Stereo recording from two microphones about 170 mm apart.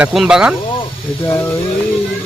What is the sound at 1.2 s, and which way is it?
Speech, 15° left (ahead or behind).